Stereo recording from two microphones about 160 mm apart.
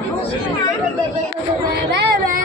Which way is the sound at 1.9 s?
60° right (ahead or behind).